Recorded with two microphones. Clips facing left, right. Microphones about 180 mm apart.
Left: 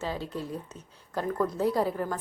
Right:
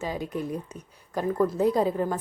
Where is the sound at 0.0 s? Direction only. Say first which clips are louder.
Right 3 dB; 15° right (ahead or behind).